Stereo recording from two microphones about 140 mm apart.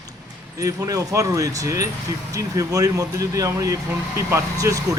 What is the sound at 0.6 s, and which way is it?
Speech, 20° right (ahead or behind).